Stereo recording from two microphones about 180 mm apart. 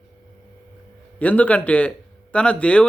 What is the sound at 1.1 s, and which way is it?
A man's voice, 10° left (ahead or behind).